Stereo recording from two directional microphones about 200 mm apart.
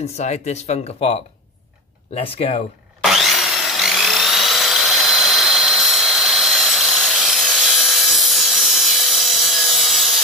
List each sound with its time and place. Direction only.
0.0 s speech: 35° left (ahead or behind)
2.3 s speech: 30° left (ahead or behind)
3.0 s wood: centre (ahead or behind)